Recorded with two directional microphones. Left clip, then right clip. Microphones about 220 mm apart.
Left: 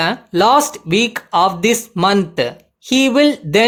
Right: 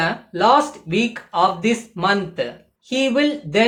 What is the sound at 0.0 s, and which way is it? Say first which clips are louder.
Speech: left 4 dB; 50° left (ahead or behind).